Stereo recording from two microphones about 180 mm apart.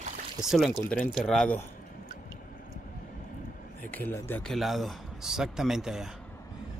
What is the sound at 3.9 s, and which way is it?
A man's voice, 10° left (ahead or behind).